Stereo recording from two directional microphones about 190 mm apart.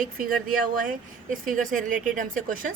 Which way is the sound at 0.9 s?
45° right (ahead or behind).